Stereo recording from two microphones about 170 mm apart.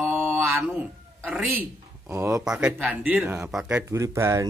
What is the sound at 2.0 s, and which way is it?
Speech, 15° right (ahead or behind).